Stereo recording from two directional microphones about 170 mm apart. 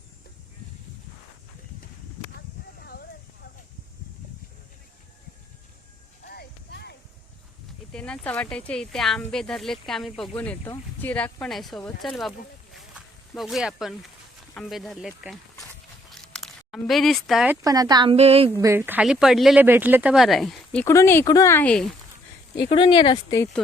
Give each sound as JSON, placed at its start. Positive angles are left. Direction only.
{"t": 2.8, "sound": "a sound", "side_deg": 65}
{"t": 6.2, "sound": "music", "side_deg": 65}
{"t": 7.9, "sound": "speech", "side_deg": 5}
{"t": 12.9, "sound": "speech", "side_deg": 0}
{"t": 16.0, "sound": "a sound", "side_deg": 0}
{"t": 17.5, "sound": "speech", "side_deg": -20}
{"t": 18.6, "sound": "speech", "side_deg": -15}
{"t": 20.8, "sound": "speech", "side_deg": 15}
{"t": 22.7, "sound": "speech", "side_deg": 30}
{"t": 23.6, "sound": "speech", "side_deg": 5}